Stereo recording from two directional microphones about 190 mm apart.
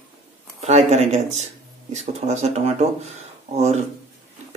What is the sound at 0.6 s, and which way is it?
Speech, 35° right (ahead or behind).